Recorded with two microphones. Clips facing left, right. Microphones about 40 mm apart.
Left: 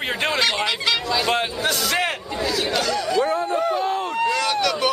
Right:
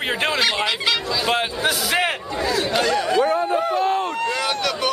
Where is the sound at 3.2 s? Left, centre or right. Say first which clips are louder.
Right 2 dB; centre.